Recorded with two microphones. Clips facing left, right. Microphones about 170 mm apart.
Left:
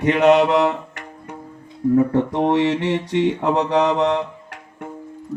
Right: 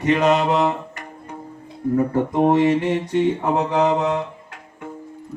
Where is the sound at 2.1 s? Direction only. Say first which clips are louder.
Right 1 dB; 75° left (ahead or behind).